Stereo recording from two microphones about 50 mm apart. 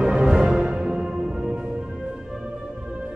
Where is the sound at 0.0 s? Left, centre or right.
Centre.